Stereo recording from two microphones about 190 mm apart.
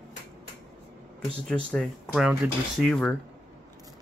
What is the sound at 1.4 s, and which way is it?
Speech, centre (ahead or behind).